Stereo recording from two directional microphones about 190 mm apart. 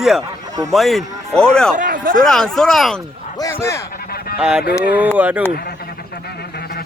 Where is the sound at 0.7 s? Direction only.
Centre (ahead or behind).